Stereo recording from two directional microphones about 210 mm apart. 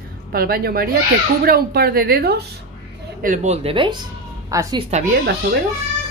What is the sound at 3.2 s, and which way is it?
A woman's voice, 35° right (ahead or behind).